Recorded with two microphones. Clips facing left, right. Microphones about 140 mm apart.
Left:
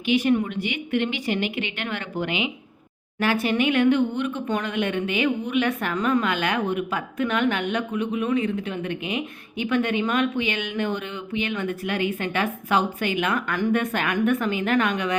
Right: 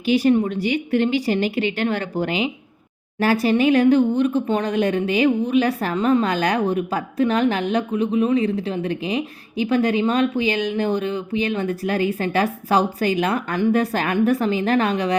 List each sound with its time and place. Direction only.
0.0 s speech: 35° right (ahead or behind)